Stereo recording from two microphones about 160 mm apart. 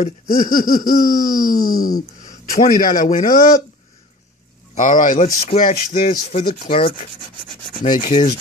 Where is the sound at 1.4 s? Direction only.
65° left (ahead or behind).